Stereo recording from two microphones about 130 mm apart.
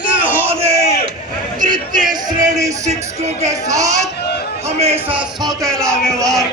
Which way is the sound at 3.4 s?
25° right (ahead or behind).